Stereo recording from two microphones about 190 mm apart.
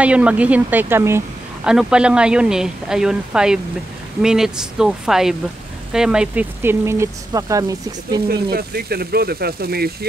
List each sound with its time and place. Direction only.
0.0 s a woman's voice: 5° right (ahead or behind)
8.3 s speech: 55° right (ahead or behind)